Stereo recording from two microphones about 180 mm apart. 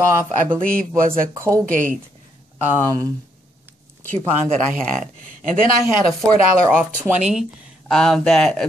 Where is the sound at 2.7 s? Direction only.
20° right (ahead or behind).